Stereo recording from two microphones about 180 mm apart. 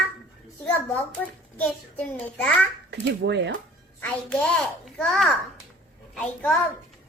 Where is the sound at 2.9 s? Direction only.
75° right (ahead or behind).